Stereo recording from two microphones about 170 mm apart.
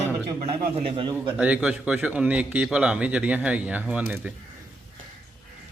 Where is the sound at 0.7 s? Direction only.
35° right (ahead or behind).